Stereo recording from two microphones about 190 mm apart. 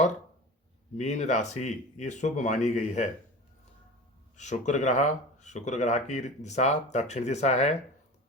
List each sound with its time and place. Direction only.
0.9 s speech: 40° left (ahead or behind)
4.4 s speech: 40° left (ahead or behind)